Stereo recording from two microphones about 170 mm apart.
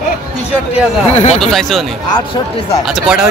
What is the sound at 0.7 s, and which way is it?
Speech, 40° left (ahead or behind).